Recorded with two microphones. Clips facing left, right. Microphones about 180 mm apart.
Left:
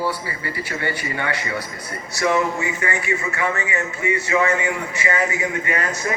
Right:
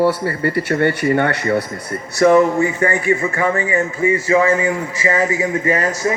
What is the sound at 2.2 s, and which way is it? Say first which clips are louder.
Speech: right 9 dB; 45° right (ahead or behind).